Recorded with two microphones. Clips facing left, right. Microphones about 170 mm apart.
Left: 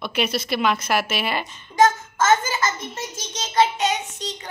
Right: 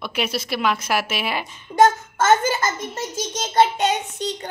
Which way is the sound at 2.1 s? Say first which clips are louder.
Right 2 dB; 60° right (ahead or behind).